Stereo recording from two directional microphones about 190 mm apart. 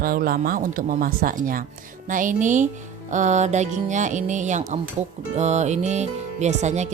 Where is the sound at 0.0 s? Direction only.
50° right (ahead or behind).